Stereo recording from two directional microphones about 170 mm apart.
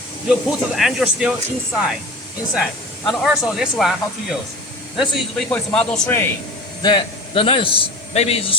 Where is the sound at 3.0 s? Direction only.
Centre (ahead or behind).